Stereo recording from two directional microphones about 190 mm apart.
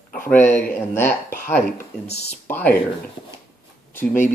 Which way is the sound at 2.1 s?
35° left (ahead or behind).